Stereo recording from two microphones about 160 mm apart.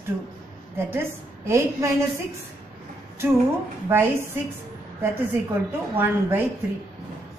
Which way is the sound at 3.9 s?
15° right (ahead or behind).